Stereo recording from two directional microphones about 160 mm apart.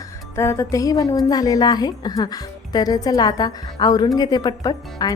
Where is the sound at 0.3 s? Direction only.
15° left (ahead or behind).